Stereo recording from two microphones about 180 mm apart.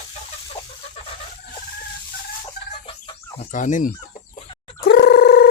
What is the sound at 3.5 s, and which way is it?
Speech, 45° left (ahead or behind).